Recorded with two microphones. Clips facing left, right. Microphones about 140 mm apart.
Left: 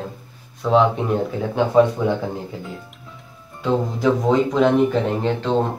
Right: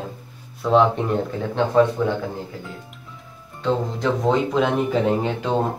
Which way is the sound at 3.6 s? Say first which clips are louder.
Left 2 dB; 5° left (ahead or behind).